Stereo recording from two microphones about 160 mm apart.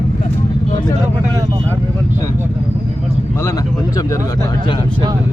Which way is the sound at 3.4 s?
20° left (ahead or behind).